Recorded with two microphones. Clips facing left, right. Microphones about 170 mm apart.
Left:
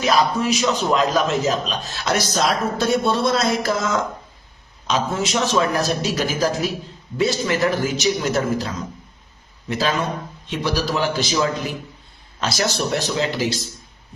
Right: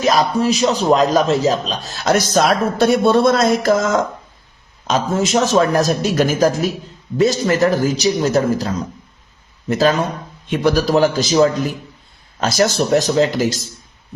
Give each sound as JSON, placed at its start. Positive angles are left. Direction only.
{"t": 0.0, "sound": "a man's voice", "side_deg": -40}
{"t": 2.3, "sound": "a man's voice", "side_deg": -60}